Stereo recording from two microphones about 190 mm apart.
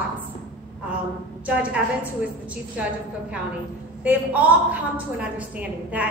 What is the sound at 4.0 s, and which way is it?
A woman's voice, 10° right (ahead or behind).